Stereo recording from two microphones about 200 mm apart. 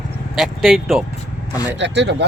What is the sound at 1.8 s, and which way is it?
Speech, 60° right (ahead or behind).